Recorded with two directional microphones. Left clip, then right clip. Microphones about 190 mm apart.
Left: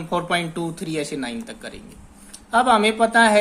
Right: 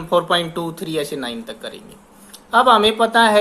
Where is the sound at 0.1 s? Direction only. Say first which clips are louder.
Right 6 dB; 25° left (ahead or behind).